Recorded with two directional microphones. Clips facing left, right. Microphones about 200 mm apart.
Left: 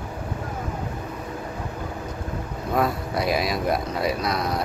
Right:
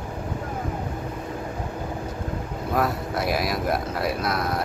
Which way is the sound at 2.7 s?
Centre (ahead or behind).